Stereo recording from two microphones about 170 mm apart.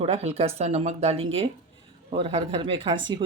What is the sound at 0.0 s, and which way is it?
Speech, 35° right (ahead or behind).